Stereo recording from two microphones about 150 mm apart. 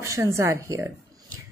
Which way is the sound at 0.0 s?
20° right (ahead or behind).